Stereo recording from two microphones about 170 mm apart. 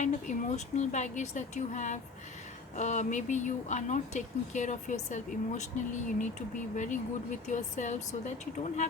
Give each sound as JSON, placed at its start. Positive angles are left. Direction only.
{"t": 0.0, "sound": "speech", "side_deg": 45}